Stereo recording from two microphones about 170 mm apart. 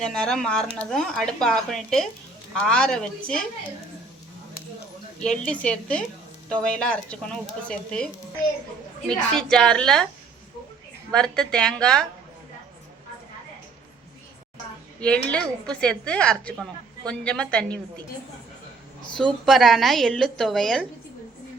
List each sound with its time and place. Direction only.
0.0 s a woman's voice: 5° left (ahead or behind)
5.2 s a woman's voice: 5° left (ahead or behind)
11.1 s a woman's voice: 5° left (ahead or behind)
15.0 s a woman's voice: 5° left (ahead or behind)
19.1 s a woman's voice: centre (ahead or behind)